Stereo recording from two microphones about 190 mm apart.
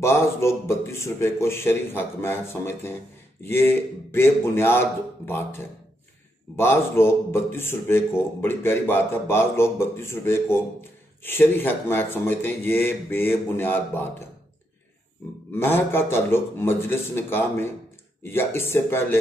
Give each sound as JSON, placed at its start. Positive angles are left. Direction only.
{"t": 0.0, "sound": "a man's voice", "side_deg": 15}
{"t": 15.5, "sound": "a man's voice", "side_deg": 10}